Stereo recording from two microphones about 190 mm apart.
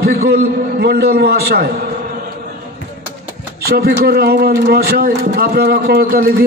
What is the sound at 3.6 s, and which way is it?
A man's voice, 55° right (ahead or behind).